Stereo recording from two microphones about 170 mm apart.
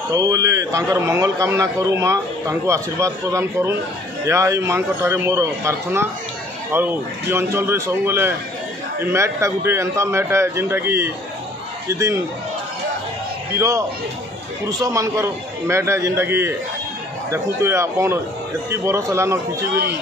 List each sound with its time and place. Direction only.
0.1 s a man's voice: 20° right (ahead or behind)
13.6 s a man's voice: 20° right (ahead or behind)